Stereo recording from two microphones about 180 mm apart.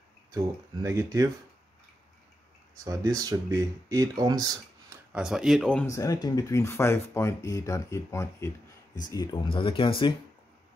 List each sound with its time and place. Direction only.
0.8 s speech: 15° right (ahead or behind)
2.8 s speech: 20° right (ahead or behind)
5.1 s speech: 5° right (ahead or behind)
5.9 s speech: 20° left (ahead or behind)